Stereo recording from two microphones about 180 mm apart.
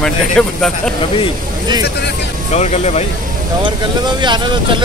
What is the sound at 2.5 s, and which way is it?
Speech, 40° left (ahead or behind).